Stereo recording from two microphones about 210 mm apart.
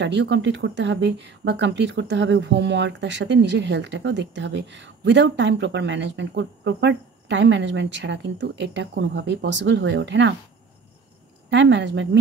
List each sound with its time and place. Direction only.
0.0 s speech: 55° right (ahead or behind)
11.5 s speech: 60° right (ahead or behind)